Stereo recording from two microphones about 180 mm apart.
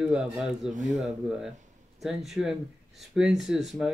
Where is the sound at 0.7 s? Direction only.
40° right (ahead or behind).